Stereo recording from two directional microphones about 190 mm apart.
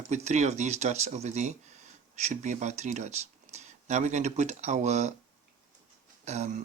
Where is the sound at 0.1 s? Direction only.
35° right (ahead or behind).